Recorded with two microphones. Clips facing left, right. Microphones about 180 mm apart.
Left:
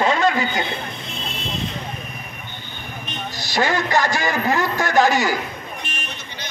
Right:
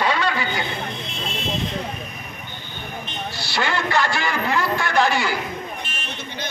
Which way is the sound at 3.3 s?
40° left (ahead or behind).